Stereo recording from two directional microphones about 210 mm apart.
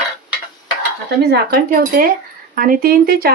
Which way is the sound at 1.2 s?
50° right (ahead or behind).